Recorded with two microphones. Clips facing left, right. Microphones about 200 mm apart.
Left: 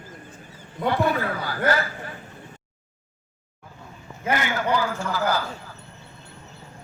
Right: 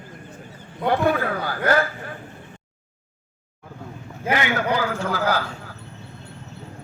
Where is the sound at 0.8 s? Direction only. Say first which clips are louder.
Right 2 dB; 55° right (ahead or behind).